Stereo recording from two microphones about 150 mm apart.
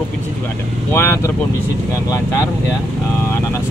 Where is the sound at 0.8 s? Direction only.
15° left (ahead or behind).